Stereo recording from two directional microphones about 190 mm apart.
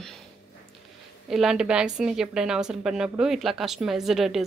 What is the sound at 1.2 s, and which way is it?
A woman's voice, 5° right (ahead or behind).